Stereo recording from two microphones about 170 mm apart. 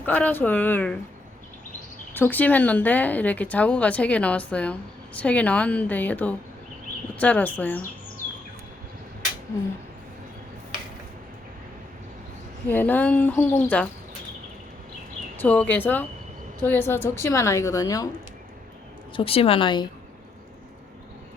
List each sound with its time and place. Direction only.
0.0 s speech: 10° left (ahead or behind)
2.1 s speech: 10° left (ahead or behind)
12.6 s speech: 10° left (ahead or behind)
15.4 s speech: 10° left (ahead or behind)
19.1 s a woman's voice: 35° left (ahead or behind)